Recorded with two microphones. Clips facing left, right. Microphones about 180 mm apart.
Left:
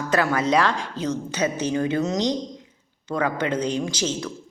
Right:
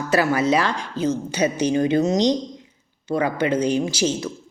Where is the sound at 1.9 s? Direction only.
25° right (ahead or behind).